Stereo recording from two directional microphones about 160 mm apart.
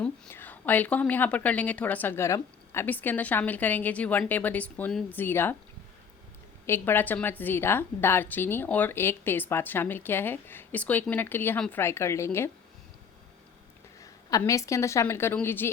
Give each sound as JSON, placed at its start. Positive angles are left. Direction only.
{"t": 0.0, "sound": "a woman's voice", "side_deg": 10}
{"t": 6.7, "sound": "a woman's voice", "side_deg": 15}
{"t": 14.0, "sound": "a woman's voice", "side_deg": 20}